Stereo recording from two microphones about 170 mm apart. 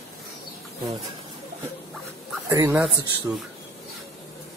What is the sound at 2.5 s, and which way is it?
Speech, 15° right (ahead or behind).